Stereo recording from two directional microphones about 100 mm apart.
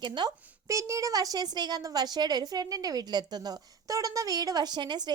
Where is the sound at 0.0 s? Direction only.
50° right (ahead or behind).